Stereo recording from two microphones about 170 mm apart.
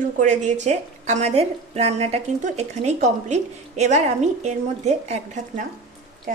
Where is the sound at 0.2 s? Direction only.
45° right (ahead or behind).